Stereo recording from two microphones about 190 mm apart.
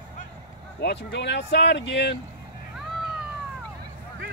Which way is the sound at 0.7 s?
60° left (ahead or behind).